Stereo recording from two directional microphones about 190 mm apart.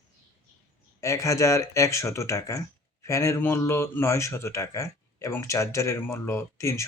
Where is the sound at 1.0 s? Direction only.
15° left (ahead or behind).